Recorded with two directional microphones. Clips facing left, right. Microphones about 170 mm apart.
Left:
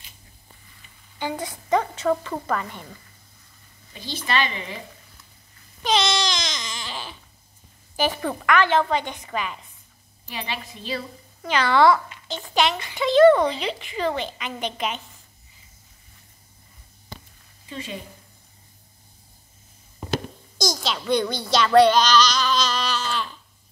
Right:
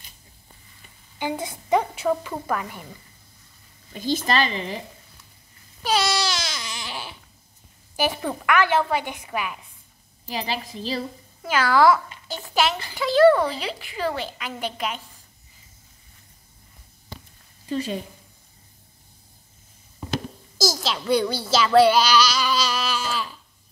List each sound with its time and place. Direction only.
1.1 s a woman's voice: 15° right (ahead or behind)
4.0 s a woman's voice: 45° right (ahead or behind)
5.9 s a sound: 5° right (ahead or behind)
7.9 s a child's voice: 10° right (ahead or behind)
10.2 s a woman's voice: 35° right (ahead or behind)
11.4 s a woman's voice: 5° right (ahead or behind)
17.6 s a woman's voice: 40° right (ahead or behind)
20.5 s a child's voice: 5° right (ahead or behind)